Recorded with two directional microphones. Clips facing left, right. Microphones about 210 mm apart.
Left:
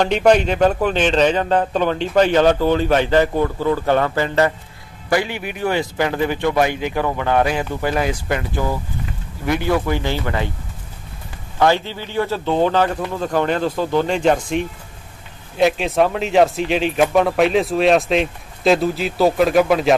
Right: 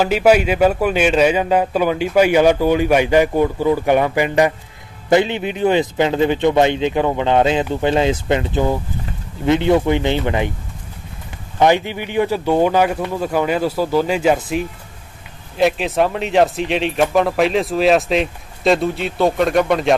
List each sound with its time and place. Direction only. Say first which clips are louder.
0.0 s a man's voice: right 1 dB; 5° right (ahead or behind)
11.5 s a man's voice: right 2 dB; 15° right (ahead or behind); by 20.0 s 5° left (ahead or behind)